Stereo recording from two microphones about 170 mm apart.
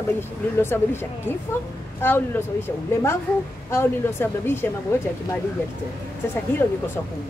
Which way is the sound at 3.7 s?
15° left (ahead or behind).